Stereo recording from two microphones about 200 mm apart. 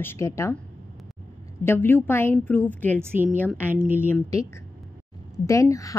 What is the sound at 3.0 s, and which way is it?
A woman's voice, 10° right (ahead or behind).